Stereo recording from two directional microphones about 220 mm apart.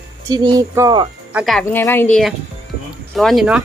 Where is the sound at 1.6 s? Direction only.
10° left (ahead or behind).